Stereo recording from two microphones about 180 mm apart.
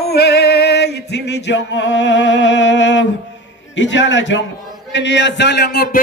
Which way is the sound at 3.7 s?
90° left.